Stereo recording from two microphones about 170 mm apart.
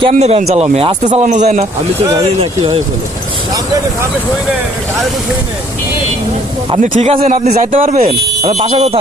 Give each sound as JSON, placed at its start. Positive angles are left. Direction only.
{"t": 0.1, "sound": "speech", "side_deg": -40}
{"t": 2.4, "sound": "speech", "side_deg": -30}
{"t": 6.8, "sound": "a man's voice", "side_deg": -50}
{"t": 8.4, "sound": "speech", "side_deg": -40}